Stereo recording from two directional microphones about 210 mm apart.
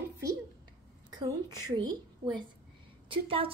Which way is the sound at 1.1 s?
20° right (ahead or behind).